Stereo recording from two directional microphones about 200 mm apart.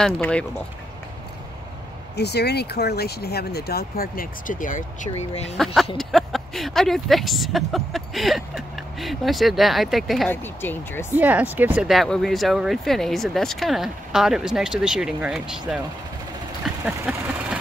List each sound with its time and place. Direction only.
0.0 s speech: 5° left (ahead or behind)
2.1 s speech: 55° left (ahead or behind); by 5.6 s 30° left (ahead or behind)
5.9 s speech: centre (ahead or behind)
10.3 s speech: 10° left (ahead or behind)
11.1 s speech: 10° right (ahead or behind)
16.8 s speech: 5° right (ahead or behind)